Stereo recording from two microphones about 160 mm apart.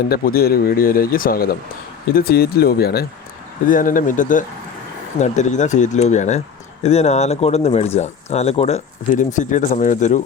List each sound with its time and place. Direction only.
0.1 s speech: 70° left (ahead or behind)
3.7 s speech: 55° left (ahead or behind)